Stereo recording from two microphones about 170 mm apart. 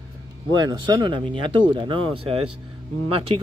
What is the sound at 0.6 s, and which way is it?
Speech, 25° right (ahead or behind).